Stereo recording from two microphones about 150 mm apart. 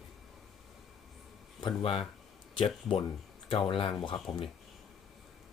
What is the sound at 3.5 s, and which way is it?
Speech, 35° left (ahead or behind).